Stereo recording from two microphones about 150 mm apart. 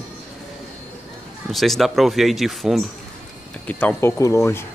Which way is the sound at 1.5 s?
Centre (ahead or behind).